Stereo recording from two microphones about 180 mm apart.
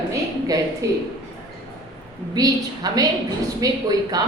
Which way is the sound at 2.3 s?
20° right (ahead or behind).